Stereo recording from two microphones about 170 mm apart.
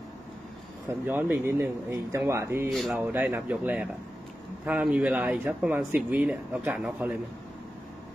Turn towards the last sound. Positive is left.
turn(degrees=-5)  # may be behind; listen again after turning